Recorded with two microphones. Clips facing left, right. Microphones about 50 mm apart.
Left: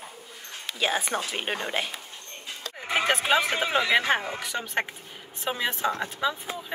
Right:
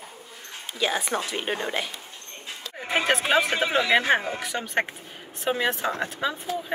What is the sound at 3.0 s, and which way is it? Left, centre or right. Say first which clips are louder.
Speech: right 1 dB; centre.